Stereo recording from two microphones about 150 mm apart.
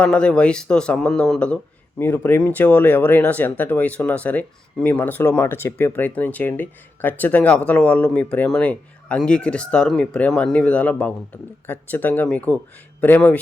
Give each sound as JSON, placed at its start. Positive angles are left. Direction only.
{"t": 0.0, "sound": "speech", "side_deg": 5}